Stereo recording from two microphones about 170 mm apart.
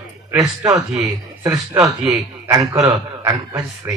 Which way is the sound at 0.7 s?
5° right (ahead or behind).